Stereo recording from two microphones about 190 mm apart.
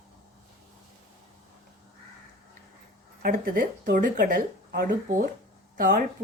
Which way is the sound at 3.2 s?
50° right (ahead or behind).